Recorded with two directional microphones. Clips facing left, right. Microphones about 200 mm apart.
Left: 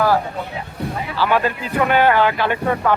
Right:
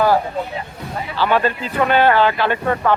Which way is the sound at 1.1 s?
10° left (ahead or behind).